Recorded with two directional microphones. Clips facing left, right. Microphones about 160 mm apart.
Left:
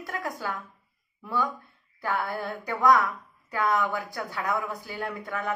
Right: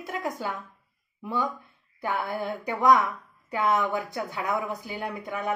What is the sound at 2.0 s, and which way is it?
A woman's voice, 20° right (ahead or behind).